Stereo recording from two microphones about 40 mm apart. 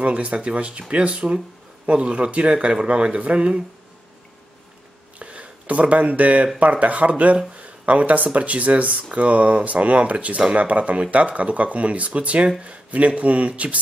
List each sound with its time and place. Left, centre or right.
0.0 s speech: right
5.2 s speech: right